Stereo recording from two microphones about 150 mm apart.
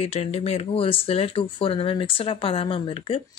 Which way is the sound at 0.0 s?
45° left (ahead or behind).